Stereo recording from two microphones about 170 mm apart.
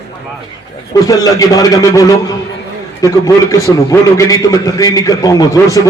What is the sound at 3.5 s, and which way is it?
Crowd, 20° left (ahead or behind).